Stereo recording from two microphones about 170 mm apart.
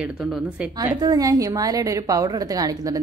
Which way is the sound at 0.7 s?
20° right (ahead or behind).